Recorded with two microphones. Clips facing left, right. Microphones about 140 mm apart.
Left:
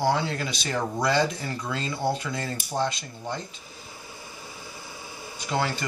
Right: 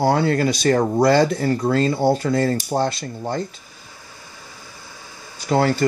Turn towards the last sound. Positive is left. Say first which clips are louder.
# right 9 dB
turn(degrees=-50)  # may be behind; listen again after turning